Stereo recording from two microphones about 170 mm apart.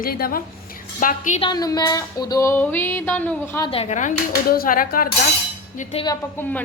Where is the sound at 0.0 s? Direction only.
60° left (ahead or behind).